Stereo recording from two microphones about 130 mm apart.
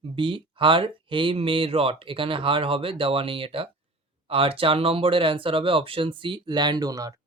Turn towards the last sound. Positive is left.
turn(degrees=-30)  # may be behind; listen again after turning